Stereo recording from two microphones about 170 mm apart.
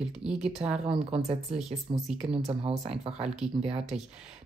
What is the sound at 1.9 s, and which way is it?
Speech, 30° right (ahead or behind).